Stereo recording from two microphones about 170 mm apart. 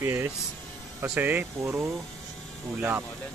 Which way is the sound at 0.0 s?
15° right (ahead or behind).